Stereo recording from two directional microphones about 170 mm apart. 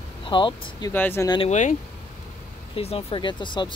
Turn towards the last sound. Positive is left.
turn(degrees=25)  # may be behind; listen again after turning